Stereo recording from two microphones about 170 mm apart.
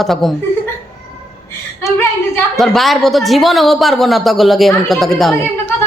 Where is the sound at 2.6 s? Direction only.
Centre (ahead or behind).